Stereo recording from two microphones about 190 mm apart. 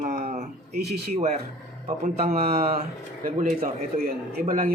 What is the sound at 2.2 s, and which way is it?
A man's voice, 50° right (ahead or behind).